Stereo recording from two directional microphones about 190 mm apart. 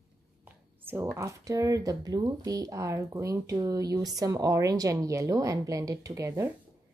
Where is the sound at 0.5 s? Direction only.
10° right (ahead or behind).